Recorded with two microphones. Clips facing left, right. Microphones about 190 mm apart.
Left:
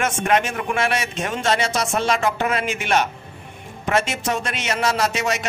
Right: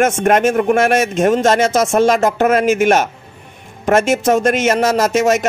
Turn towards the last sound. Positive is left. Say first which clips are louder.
# right 9 dB
turn(degrees=-45)  # may be behind; listen again after turning